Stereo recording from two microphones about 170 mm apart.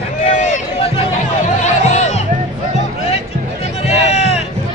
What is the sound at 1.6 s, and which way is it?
Music, 40° left (ahead or behind).